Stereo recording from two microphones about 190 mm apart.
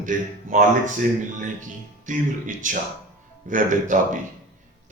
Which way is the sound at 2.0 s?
40° right (ahead or behind).